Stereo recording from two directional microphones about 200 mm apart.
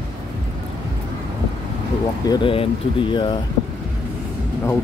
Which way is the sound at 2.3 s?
25° left (ahead or behind).